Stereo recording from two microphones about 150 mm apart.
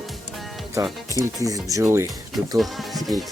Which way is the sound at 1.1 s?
20° right (ahead or behind).